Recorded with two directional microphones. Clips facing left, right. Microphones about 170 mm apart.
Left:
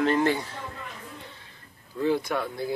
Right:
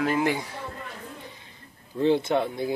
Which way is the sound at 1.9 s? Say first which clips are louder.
Right 4 dB; 25° right (ahead or behind).